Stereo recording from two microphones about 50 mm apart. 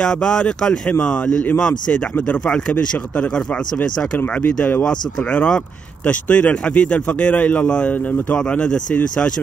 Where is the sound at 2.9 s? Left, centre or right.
Left.